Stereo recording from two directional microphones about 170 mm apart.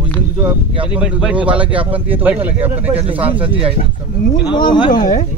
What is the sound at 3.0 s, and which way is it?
Speech, 35° right (ahead or behind).